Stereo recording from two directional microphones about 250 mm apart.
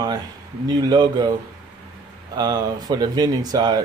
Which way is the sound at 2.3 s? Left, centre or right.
Centre.